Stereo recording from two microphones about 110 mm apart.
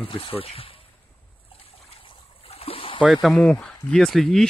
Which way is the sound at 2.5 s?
60° left (ahead or behind).